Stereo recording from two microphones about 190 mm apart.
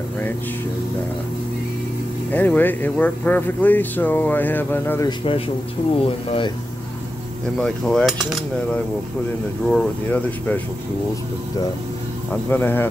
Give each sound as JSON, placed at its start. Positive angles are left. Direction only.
{"t": 2.3, "sound": "speech", "side_deg": 10}
{"t": 5.9, "sound": "speech", "side_deg": 30}
{"t": 7.6, "sound": "mechanisms", "side_deg": 5}
{"t": 9.7, "sound": "speech", "side_deg": 5}
{"t": 12.3, "sound": "speech", "side_deg": 10}